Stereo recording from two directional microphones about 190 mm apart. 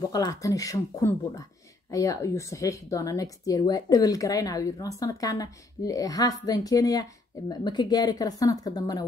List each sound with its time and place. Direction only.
0.1 s speech: 20° left (ahead or behind)